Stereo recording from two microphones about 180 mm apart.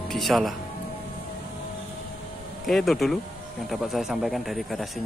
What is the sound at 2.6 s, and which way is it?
A man's voice, centre (ahead or behind).